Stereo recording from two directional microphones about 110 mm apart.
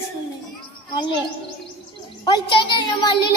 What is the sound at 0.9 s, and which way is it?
Speech, 45° left (ahead or behind).